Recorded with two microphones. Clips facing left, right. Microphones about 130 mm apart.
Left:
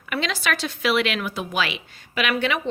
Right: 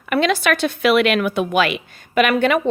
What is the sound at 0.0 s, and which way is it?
A woman's voice, 55° right (ahead or behind).